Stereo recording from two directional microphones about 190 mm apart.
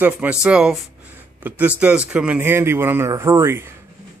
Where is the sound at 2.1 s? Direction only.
5° right (ahead or behind).